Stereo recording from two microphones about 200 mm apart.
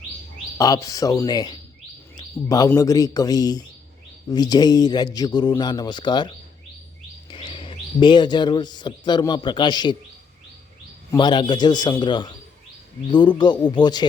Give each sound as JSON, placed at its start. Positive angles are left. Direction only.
{"t": 0.6, "sound": "a man's voice", "side_deg": 15}
{"t": 11.1, "sound": "speech", "side_deg": 20}